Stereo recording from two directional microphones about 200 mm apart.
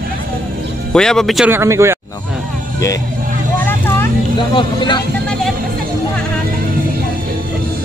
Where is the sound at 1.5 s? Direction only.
15° right (ahead or behind).